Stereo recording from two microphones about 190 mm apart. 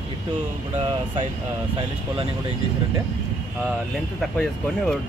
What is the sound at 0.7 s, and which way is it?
Speech, 35° right (ahead or behind).